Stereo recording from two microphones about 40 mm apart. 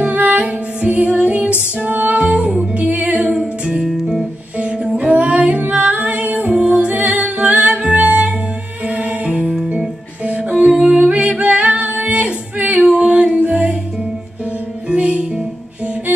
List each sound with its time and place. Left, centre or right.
0.0 s music: right
1.2 s female singing: right
1.9 s music: right
2.1 s music: right
2.7 s music: right
3.6 s music: right
6.5 s music: right
6.8 s music: right
11.1 s music: right
13.0 s singing: right
13.4 s music: right
14.9 s music: right